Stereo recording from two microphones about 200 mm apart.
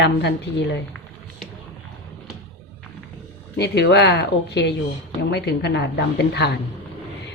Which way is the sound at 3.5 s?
55° left (ahead or behind).